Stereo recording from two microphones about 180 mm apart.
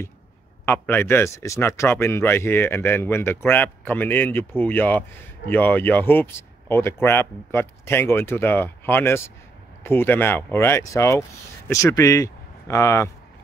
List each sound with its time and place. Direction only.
0.7 s speech: 10° left (ahead or behind)